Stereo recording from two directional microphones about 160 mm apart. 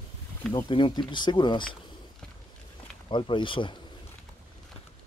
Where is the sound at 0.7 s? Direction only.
30° left (ahead or behind).